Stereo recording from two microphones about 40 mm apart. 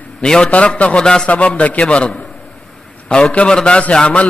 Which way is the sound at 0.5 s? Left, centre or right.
Left.